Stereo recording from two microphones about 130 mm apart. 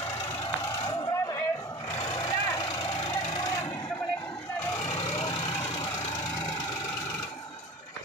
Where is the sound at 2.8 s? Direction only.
45° left (ahead or behind).